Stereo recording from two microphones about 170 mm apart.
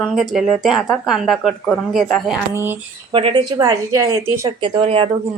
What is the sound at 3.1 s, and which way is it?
Speech, 30° right (ahead or behind).